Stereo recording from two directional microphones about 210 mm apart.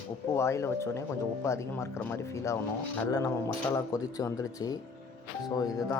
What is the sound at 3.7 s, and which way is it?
Speech, 15° left (ahead or behind).